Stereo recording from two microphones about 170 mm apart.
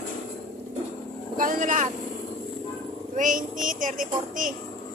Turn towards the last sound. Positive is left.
turn(degrees=-50)  # may be behind; listen again after turning